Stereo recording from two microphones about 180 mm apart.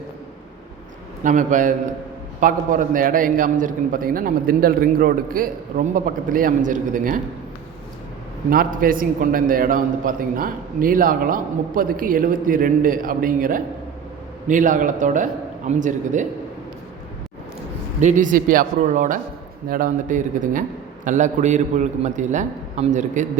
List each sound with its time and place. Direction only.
1.2 s a man's voice: 45° right (ahead or behind)
8.4 s a man's voice: 50° right (ahead or behind)
18.0 s a man's voice: 45° right (ahead or behind)